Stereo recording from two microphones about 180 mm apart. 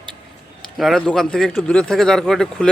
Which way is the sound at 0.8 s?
Centre (ahead or behind).